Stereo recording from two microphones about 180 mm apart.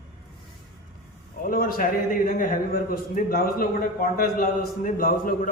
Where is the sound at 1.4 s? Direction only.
55° left (ahead or behind).